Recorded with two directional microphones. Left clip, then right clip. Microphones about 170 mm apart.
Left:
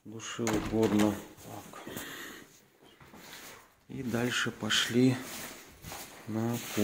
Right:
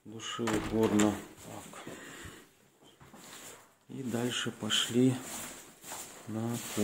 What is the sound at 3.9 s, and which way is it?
Speech, centre (ahead or behind).